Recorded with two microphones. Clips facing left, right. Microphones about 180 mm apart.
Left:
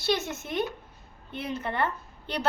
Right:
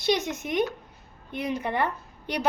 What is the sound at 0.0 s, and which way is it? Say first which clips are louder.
A woman's voice: right 3 dB; 15° right (ahead or behind).